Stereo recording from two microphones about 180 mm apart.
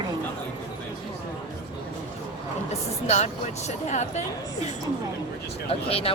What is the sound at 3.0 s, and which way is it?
Speech, 40° left (ahead or behind).